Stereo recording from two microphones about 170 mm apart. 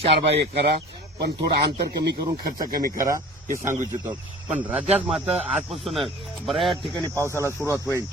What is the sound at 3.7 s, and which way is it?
Speech, 10° right (ahead or behind).